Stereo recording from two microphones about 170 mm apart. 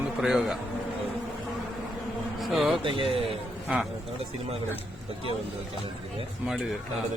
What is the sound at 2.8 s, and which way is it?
Speech, 30° right (ahead or behind).